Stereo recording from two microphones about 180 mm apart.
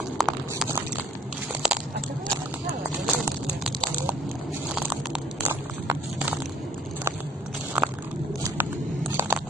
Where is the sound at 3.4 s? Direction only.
Centre (ahead or behind).